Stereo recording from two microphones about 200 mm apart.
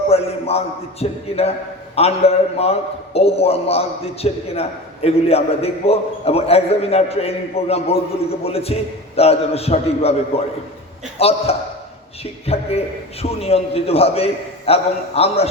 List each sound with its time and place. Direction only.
0.1 s a man's voice: 30° left (ahead or behind)